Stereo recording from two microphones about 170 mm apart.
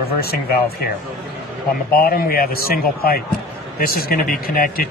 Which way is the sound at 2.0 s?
60° left (ahead or behind).